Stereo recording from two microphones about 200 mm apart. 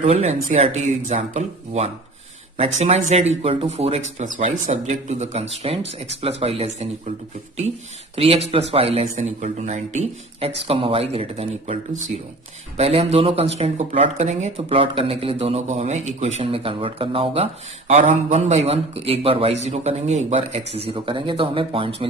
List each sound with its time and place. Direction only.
0.0 s speech: 35° right (ahead or behind)
8.2 s speech: 30° right (ahead or behind)